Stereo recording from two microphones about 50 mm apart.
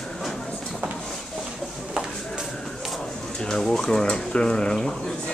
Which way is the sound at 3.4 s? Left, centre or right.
Centre.